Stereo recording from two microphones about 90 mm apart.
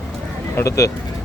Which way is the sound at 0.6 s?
35° left (ahead or behind).